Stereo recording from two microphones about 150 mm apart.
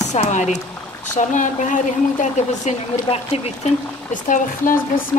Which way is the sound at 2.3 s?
45° left (ahead or behind).